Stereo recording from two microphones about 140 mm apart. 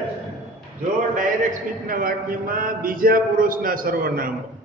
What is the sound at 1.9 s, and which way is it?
A man's voice, 90° right.